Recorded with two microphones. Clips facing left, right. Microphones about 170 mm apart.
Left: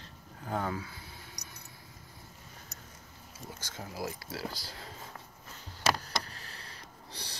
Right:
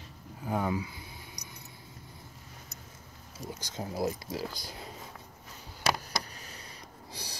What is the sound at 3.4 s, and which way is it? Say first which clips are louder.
Speech: right 5 dB; 15° right (ahead or behind).